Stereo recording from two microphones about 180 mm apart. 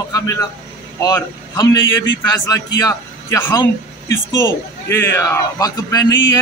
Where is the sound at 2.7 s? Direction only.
20° left (ahead or behind).